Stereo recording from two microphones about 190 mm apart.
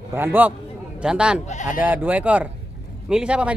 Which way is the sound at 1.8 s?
10° right (ahead or behind).